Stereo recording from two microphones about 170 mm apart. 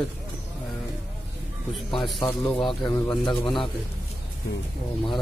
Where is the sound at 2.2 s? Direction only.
5° left (ahead or behind).